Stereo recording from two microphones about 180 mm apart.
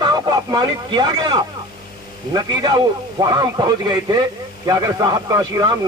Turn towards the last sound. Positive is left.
turn(degrees=-20)  # may be behind; listen again after turning